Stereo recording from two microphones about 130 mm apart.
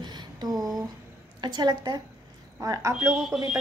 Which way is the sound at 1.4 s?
35° right (ahead or behind).